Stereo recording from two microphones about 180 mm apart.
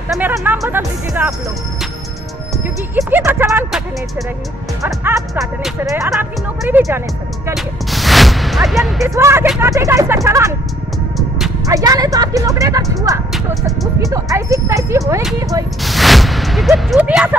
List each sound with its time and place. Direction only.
0.7 s speech: 10° right (ahead or behind)
3.0 s speech: 15° right (ahead or behind)
4.8 s speech: 15° right (ahead or behind)
6.1 s speech: centre (ahead or behind)
9.0 s speech: 15° right (ahead or behind)
11.1 s music: centre (ahead or behind)
11.6 s speech: 20° right (ahead or behind)
15.8 s speech: centre (ahead or behind)